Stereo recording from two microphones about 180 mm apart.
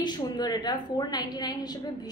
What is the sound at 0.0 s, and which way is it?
A woman's voice, 25° left (ahead or behind).